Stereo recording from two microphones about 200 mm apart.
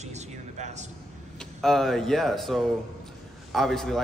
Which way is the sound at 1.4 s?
Centre (ahead or behind).